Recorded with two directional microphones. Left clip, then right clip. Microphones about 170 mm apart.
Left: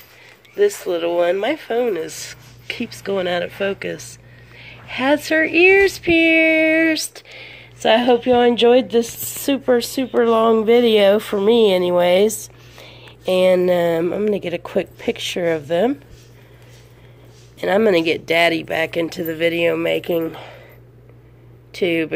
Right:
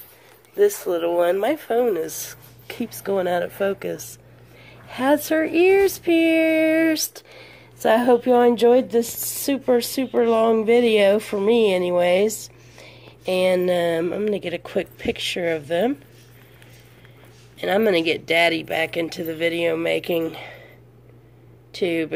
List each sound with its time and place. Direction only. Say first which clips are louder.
0.6 s speech: left 1 dB; centre (ahead or behind)
9.2 s speech: even; 30° left (ahead or behind)
9.5 s speech: left 3 dB; centre (ahead or behind)
17.6 s speech: left 4 dB; 5° left (ahead or behind)
21.7 s speech: left 4 dB; centre (ahead or behind)